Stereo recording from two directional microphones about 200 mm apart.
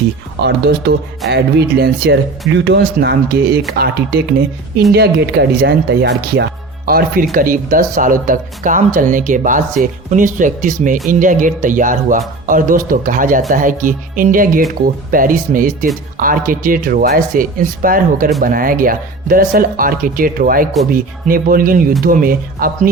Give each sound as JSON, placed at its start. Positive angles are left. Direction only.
{"t": 1.3, "sound": "speech", "side_deg": -50}